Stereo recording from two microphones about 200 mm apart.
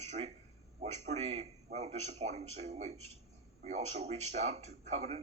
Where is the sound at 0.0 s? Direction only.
30° right (ahead or behind).